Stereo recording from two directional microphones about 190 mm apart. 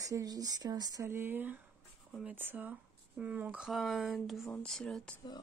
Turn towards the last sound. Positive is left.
turn(degrees=0)  # may be behind; listen again after turning